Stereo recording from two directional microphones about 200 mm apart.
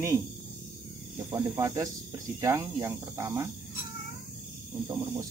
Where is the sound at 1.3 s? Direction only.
10° right (ahead or behind).